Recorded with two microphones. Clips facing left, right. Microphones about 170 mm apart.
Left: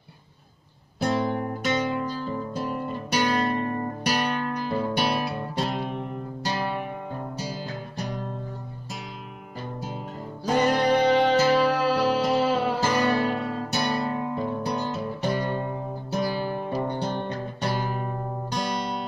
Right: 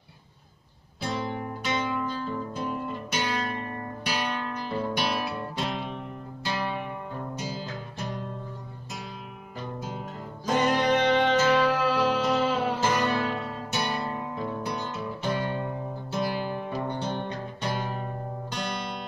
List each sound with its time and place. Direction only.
1.0 s music: 50° left (ahead or behind)
10.4 s music: 35° left (ahead or behind)